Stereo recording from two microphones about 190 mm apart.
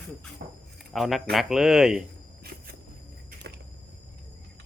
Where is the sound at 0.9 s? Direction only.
Centre (ahead or behind).